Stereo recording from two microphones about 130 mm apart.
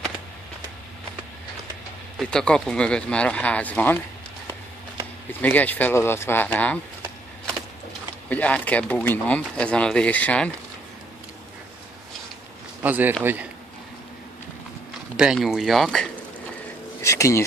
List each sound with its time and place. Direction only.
2.1 s speech: 5° left (ahead or behind)
5.4 s speech: 10° left (ahead or behind)
8.3 s speech: 10° left (ahead or behind)
12.8 s a man's voice: 15° right (ahead or behind)
15.1 s speech: 5° right (ahead or behind)
17.0 s speech: 25° left (ahead or behind)